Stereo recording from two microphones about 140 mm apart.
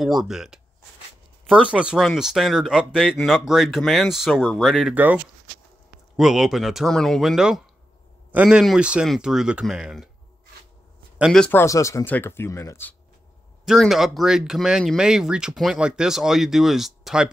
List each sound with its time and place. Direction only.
0.0 s speech: centre (ahead or behind)
4.9 s speech: 10° right (ahead or behind)
11.3 s speech: 10° left (ahead or behind)
11.6 s speech: 20° left (ahead or behind)
13.7 s speech: centre (ahead or behind)